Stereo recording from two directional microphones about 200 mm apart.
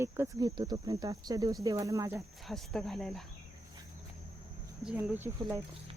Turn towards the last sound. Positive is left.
turn(degrees=-10)  # may be behind; listen again after turning